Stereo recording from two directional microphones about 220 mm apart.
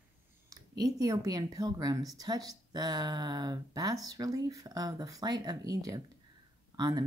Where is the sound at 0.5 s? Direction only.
15° right (ahead or behind).